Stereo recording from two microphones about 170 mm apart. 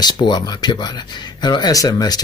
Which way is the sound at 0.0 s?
25° left (ahead or behind).